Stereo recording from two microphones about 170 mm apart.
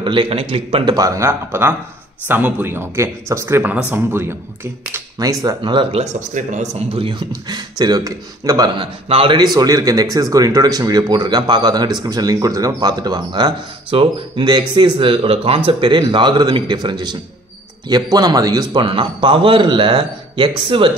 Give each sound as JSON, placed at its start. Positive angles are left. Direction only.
{"t": 0.0, "sound": "a man's voice", "side_deg": -30}
{"t": 0.9, "sound": "speech", "side_deg": -20}